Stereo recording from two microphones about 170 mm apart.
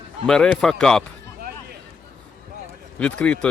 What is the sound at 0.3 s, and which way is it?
Speech, 5° left (ahead or behind).